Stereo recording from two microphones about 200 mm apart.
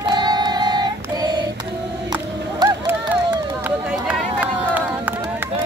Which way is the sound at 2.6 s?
20° right (ahead or behind).